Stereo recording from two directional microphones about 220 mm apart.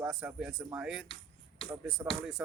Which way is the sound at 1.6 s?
25° left (ahead or behind).